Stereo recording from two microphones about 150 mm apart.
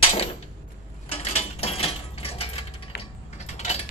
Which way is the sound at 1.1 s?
40° left (ahead or behind).